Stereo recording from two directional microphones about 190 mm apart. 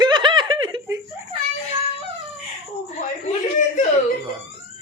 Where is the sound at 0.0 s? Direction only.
25° right (ahead or behind).